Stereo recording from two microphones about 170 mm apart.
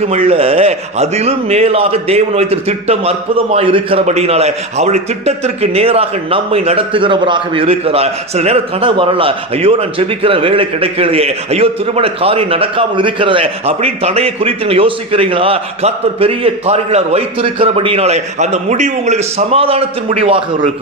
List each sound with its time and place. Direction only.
0.1 s a man's voice: 35° right (ahead or behind)